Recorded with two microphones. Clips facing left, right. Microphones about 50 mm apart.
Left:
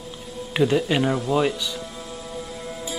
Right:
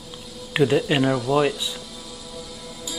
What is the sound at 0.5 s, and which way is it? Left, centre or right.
Speech, centre.